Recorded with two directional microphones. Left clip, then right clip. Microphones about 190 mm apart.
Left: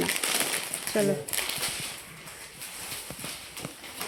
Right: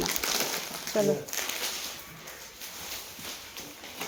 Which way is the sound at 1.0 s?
15° left (ahead or behind).